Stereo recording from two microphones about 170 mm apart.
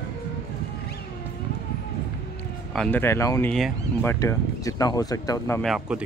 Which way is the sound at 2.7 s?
5° left (ahead or behind).